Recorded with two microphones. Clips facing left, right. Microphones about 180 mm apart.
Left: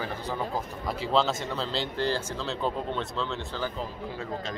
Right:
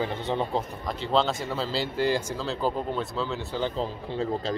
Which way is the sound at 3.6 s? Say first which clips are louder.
Right 4 dB; 30° right (ahead or behind).